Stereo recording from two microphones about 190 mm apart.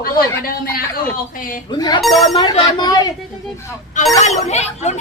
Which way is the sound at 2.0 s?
Centre (ahead or behind).